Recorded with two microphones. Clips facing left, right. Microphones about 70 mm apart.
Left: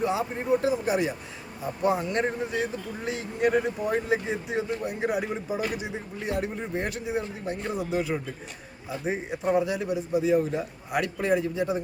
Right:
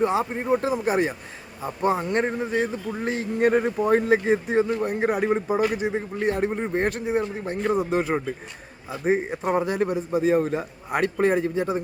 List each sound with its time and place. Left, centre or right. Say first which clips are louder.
0.0 s speech: right 4 dB; right